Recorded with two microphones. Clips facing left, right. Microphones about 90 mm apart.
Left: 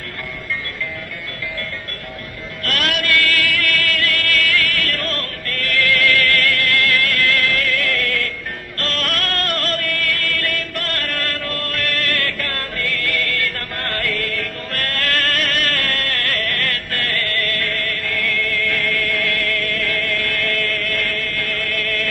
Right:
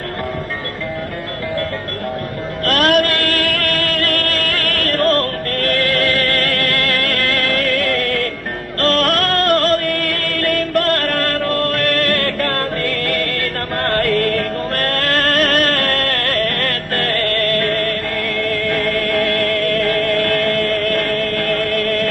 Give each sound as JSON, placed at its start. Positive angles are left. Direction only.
{"t": 2.6, "sound": "music", "side_deg": -40}